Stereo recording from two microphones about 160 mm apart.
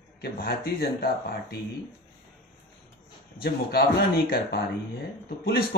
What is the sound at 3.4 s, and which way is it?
A man's voice, 85° left.